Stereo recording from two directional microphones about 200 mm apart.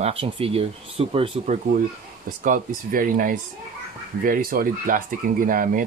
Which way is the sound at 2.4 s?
40° right (ahead or behind).